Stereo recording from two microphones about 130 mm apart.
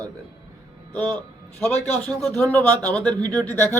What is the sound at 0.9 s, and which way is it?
A man's voice, 15° left (ahead or behind).